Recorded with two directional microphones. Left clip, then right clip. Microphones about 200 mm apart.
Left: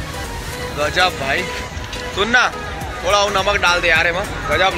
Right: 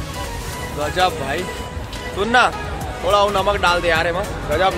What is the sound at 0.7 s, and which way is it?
Speech, 15° right (ahead or behind).